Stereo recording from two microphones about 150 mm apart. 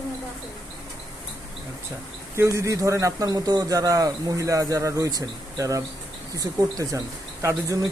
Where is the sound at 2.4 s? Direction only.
20° right (ahead or behind).